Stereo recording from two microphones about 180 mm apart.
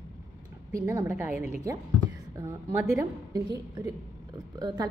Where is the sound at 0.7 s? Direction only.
15° right (ahead or behind).